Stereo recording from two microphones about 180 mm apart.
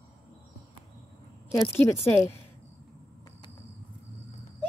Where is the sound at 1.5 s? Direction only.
15° left (ahead or behind).